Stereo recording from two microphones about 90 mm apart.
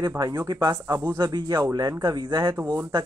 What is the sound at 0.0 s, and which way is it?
Speech, 50° right (ahead or behind).